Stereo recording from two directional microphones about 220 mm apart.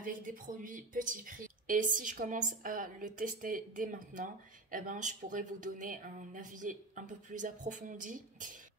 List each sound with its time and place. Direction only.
0.0 s speech: 35° right (ahead or behind)